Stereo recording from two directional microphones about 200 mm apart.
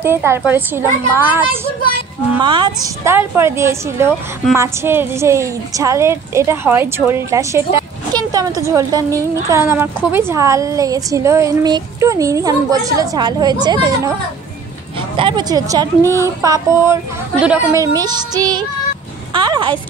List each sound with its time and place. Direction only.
0.0 s a woman's voice: 10° right (ahead or behind)
2.4 s a woman's voice: 20° right (ahead or behind)
15.1 s a woman's voice: 25° right (ahead or behind)
17.9 s music: 20° right (ahead or behind)
19.3 s speech: 25° right (ahead or behind)